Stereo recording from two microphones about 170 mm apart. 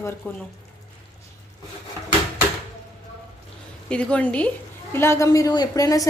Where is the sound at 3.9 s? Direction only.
5° left (ahead or behind).